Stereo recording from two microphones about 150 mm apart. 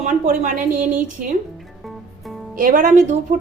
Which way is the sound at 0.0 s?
60° right (ahead or behind).